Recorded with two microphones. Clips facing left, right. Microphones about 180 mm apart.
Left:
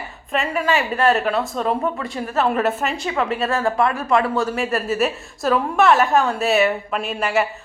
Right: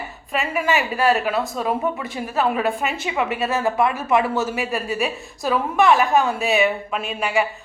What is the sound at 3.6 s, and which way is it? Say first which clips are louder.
A woman's voice: left 1 dB; 5° right (ahead or behind).